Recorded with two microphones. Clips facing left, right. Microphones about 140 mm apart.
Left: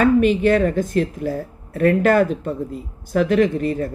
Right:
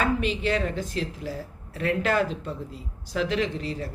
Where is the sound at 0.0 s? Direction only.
50° left (ahead or behind).